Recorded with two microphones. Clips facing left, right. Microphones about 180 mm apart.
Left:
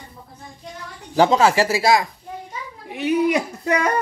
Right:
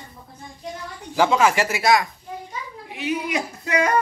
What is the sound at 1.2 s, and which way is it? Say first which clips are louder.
Speech: left 3 dB; 35° left (ahead or behind).